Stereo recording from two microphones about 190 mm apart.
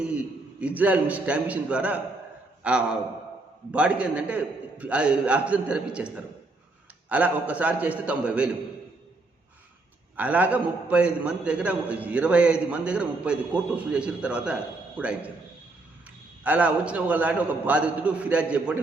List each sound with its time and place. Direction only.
0.0 s a man's voice: 5° right (ahead or behind)
7.1 s a man's voice: 10° right (ahead or behind)
10.2 s a man's voice: 10° right (ahead or behind)
16.4 s a man's voice: 10° right (ahead or behind)